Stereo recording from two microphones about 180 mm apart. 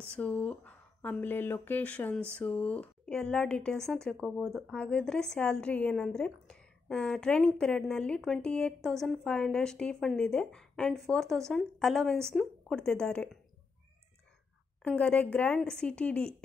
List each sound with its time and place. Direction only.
0.0 s speech: 5° left (ahead or behind)
14.8 s speech: 5° left (ahead or behind)